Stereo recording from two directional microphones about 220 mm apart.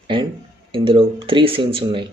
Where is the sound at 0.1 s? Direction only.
25° right (ahead or behind).